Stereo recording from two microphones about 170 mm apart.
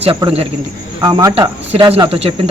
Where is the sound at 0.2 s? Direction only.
30° right (ahead or behind).